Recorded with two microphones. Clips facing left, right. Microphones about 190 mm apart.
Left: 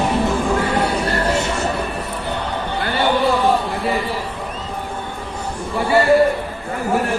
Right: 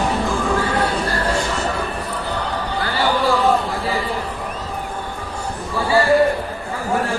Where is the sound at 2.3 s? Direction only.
25° left (ahead or behind).